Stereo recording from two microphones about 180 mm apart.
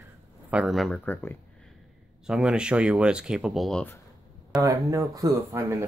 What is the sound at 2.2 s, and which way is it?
Speech, 5° right (ahead or behind).